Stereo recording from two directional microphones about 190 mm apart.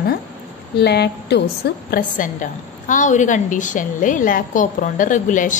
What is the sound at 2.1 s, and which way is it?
A woman's voice, 45° left (ahead or behind).